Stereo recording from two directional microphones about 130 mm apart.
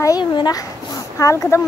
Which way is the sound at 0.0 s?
30° left (ahead or behind).